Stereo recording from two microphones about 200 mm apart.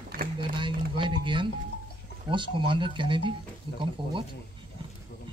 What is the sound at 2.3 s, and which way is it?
Speech, 25° right (ahead or behind).